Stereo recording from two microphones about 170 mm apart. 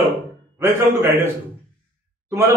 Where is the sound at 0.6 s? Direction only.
15° right (ahead or behind).